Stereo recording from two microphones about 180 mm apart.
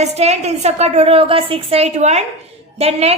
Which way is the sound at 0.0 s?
35° right (ahead or behind).